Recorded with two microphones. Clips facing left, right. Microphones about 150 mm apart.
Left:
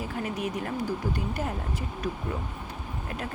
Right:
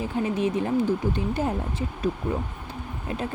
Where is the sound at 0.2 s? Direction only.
25° right (ahead or behind).